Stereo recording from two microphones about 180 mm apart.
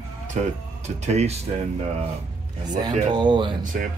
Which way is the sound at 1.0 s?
40° right (ahead or behind).